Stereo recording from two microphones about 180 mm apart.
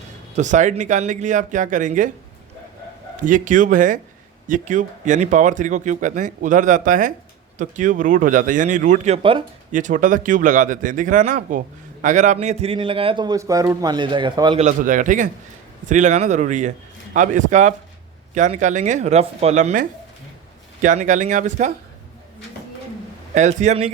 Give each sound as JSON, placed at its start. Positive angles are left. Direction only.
{"t": 0.3, "sound": "speech", "side_deg": -45}
{"t": 3.2, "sound": "speech", "side_deg": -45}
{"t": 9.7, "sound": "a man's voice", "side_deg": -45}
{"t": 14.6, "sound": "speech", "side_deg": -45}
{"t": 23.3, "sound": "speech", "side_deg": -40}